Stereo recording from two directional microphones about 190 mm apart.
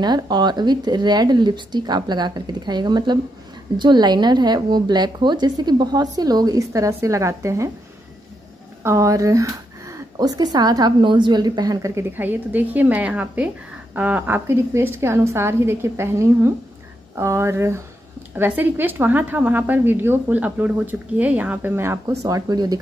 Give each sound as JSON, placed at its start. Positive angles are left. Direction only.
{"t": 0.0, "sound": "a woman's voice", "side_deg": -25}
{"t": 8.8, "sound": "a woman's voice", "side_deg": -15}